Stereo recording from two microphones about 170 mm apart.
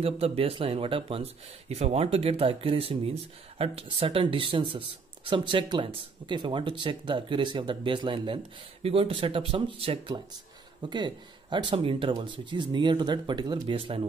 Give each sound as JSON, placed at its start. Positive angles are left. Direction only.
{"t": 0.0, "sound": "speech", "side_deg": -35}